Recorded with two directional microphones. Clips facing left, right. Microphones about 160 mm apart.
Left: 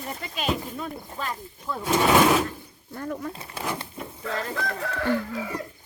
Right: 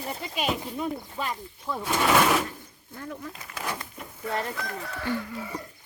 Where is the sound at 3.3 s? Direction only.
30° left (ahead or behind).